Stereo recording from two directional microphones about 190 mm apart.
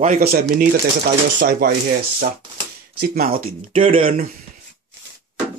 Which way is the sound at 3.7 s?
30° right (ahead or behind).